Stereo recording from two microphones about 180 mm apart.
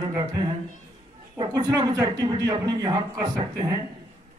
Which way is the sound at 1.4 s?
25° right (ahead or behind).